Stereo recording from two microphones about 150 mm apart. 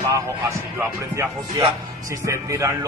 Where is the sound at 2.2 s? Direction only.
20° right (ahead or behind).